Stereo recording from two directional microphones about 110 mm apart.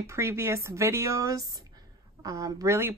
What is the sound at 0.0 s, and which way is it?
Speech, 25° right (ahead or behind).